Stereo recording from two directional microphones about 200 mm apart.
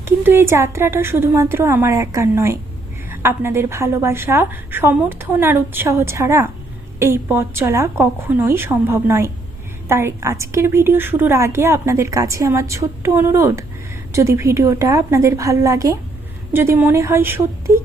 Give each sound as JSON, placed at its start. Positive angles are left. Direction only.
{"t": 0.0, "sound": "a woman's voice", "side_deg": -10}